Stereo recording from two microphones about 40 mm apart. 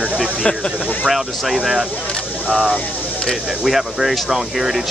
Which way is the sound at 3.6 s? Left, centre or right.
Centre.